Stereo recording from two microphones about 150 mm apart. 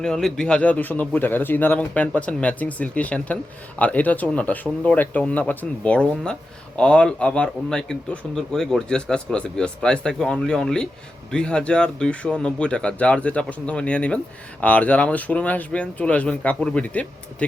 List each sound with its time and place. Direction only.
0.0 s speech: 5° left (ahead or behind)